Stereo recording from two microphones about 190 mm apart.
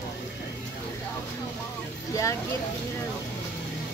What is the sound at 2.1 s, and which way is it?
Speech, 15° left (ahead or behind).